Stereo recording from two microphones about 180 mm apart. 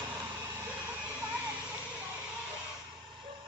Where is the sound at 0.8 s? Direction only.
5° right (ahead or behind).